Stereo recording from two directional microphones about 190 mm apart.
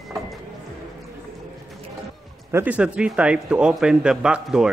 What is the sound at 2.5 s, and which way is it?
Speech, 5° right (ahead or behind).